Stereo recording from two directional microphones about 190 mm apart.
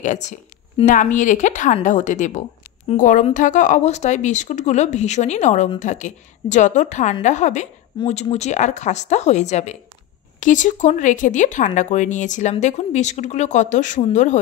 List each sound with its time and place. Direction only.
0.0 s a woman's voice: 40° left (ahead or behind)